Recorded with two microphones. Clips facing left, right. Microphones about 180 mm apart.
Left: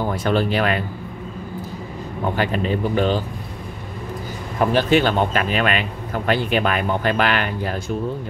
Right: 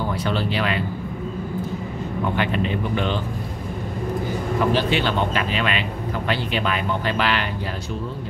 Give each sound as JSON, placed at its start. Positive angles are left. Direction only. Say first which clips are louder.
{"t": 0.1, "sound": "speech", "louder": "left 4 dB", "side_deg": 50}
{"t": 2.3, "sound": "speech", "louder": "left 3 dB", "side_deg": 40}
{"t": 4.7, "sound": "speech", "louder": "left 4 dB", "side_deg": 45}